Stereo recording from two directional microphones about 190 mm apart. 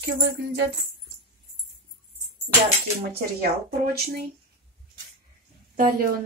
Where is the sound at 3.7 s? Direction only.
55° right (ahead or behind).